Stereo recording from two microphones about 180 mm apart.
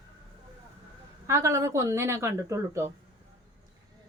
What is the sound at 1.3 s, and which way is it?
Speech, 15° right (ahead or behind).